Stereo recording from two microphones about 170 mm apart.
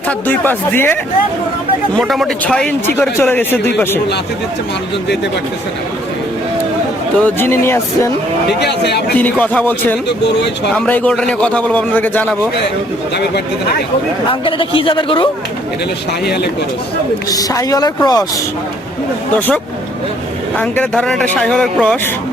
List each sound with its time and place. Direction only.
0.1 s a man's voice: 10° left (ahead or behind)
2.0 s a man's voice: centre (ahead or behind)
7.2 s a man's voice: 10° left (ahead or behind)
8.4 s speech: 80° left
9.1 s a man's voice: 10° left (ahead or behind)
14.4 s speech: 30° left (ahead or behind)
16.2 s speech: 70° left (ahead or behind)
17.2 s a woman's voice: 20° left (ahead or behind)
20.6 s a man's voice: 5° left (ahead or behind)